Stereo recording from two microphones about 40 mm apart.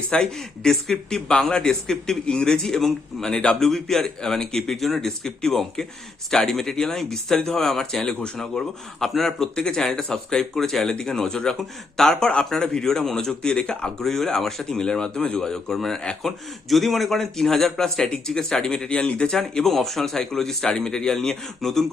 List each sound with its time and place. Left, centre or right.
0.3 s a man's voice: centre
14.0 s a man's voice: centre
19.4 s a man's voice: centre